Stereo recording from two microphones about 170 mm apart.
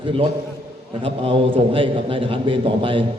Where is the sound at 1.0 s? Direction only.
30° right (ahead or behind).